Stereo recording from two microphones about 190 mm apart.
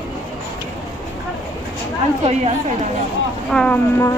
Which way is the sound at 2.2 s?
35° right (ahead or behind).